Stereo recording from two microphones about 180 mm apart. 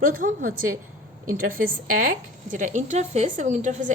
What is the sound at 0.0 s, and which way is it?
Speech, 50° right (ahead or behind).